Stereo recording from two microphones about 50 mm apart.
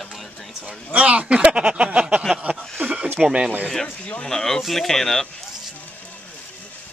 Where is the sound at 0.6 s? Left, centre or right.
Right.